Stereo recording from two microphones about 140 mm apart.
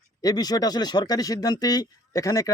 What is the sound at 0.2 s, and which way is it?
Speech, 30° left (ahead or behind).